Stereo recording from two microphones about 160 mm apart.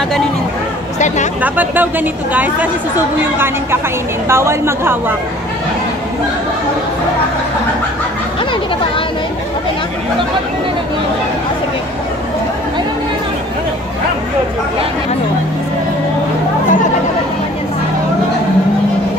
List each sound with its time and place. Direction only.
0.9 s speech: 50° left (ahead or behind)
1.4 s speech: 10° right (ahead or behind)
4.3 s speech: 15° right (ahead or behind)